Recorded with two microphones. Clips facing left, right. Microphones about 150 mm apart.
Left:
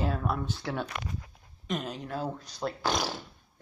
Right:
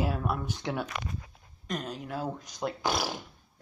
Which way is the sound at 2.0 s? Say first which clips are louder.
Even; 10° right (ahead or behind).